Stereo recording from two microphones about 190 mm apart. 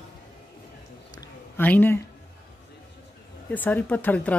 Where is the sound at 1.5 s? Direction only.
10° left (ahead or behind).